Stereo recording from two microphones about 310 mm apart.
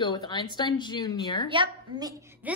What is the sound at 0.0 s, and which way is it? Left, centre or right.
Speech, centre.